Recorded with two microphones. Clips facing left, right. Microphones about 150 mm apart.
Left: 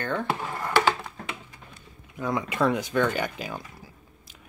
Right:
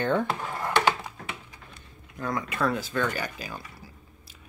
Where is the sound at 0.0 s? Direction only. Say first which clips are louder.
Right 4 dB; 20° right (ahead or behind).